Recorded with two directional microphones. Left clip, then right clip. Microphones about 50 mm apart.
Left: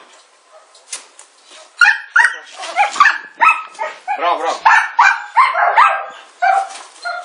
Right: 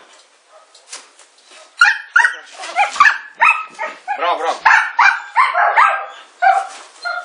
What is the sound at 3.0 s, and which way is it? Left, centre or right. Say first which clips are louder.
Dog: even; right.